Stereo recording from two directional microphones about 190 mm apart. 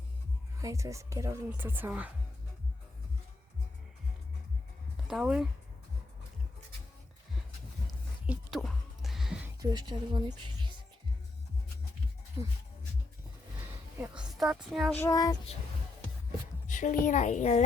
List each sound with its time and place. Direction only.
0.6 s a woman's voice: 15° right (ahead or behind)
5.0 s speech: 5° right (ahead or behind)
8.3 s a sound: centre (ahead or behind)
9.6 s speech: 20° right (ahead or behind)
14.0 s a woman's voice: 5° right (ahead or behind)
15.0 s child singing: 20° left (ahead or behind)
16.6 s a sound: 40° left (ahead or behind)
17.1 s a woman's voice: 40° left (ahead or behind)